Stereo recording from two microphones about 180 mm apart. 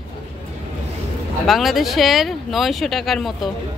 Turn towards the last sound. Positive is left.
turn(degrees=0)  # may be behind; listen again after turning